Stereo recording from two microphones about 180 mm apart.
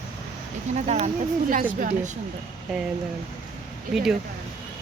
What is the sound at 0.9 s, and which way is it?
Speech, 40° right (ahead or behind).